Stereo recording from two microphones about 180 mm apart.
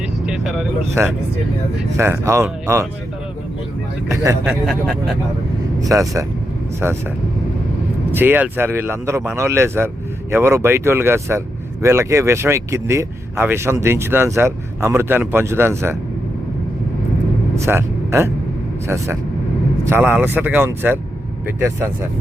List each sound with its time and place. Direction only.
0.3 s vehicle: centre (ahead or behind)
1.8 s speech: 15° right (ahead or behind)
4.1 s speech: 15° right (ahead or behind)
4.6 s speech: centre (ahead or behind)
5.9 s speech: 15° right (ahead or behind)
8.1 s speech: 10° right (ahead or behind)
17.6 s speech: 15° right (ahead or behind)
19.8 s speech: 10° right (ahead or behind)